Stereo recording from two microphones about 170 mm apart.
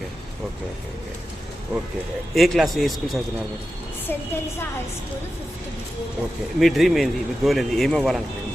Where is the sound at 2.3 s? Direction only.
Centre (ahead or behind).